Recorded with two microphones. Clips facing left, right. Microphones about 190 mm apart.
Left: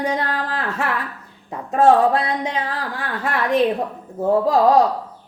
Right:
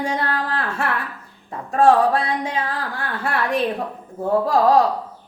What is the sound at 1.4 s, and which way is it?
Speech, 20° left (ahead or behind).